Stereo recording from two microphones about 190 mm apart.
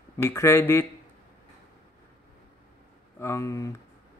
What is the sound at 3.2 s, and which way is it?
Speech, 15° left (ahead or behind).